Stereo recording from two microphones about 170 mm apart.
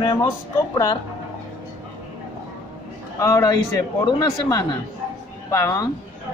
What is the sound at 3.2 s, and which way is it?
Speech, 20° left (ahead or behind).